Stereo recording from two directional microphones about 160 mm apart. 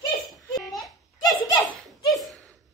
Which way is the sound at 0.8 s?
Centre (ahead or behind).